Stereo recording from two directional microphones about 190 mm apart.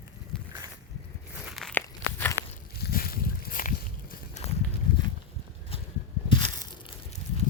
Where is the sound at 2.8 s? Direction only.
55° left (ahead or behind).